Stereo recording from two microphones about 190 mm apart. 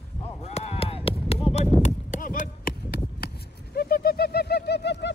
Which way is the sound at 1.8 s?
40° left (ahead or behind).